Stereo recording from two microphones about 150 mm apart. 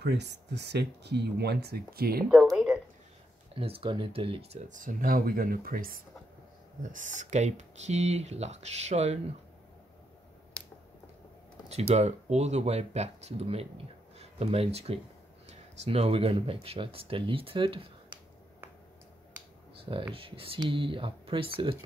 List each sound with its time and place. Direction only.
0.6 s speech: 90° right
2.5 s a sound: 5° right (ahead or behind)
3.5 s speech: 40° right (ahead or behind); by 6.0 s 70° right (ahead or behind)
6.8 s speech: 55° right (ahead or behind)
10.6 s finger snapping: 5° left (ahead or behind)
11.9 s speech: 45° right (ahead or behind)
19.8 s speech: 35° right (ahead or behind)